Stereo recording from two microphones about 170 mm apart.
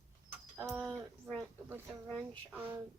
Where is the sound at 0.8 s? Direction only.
Centre (ahead or behind).